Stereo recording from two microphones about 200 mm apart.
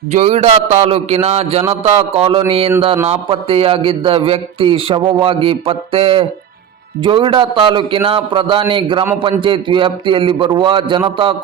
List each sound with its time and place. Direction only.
0.1 s a man's voice: 35° right (ahead or behind)